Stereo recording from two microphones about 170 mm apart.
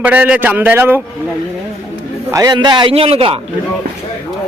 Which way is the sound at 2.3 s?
25° right (ahead or behind).